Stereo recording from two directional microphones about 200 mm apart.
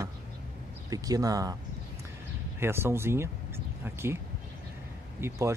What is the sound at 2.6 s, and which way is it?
Speech, 10° right (ahead or behind).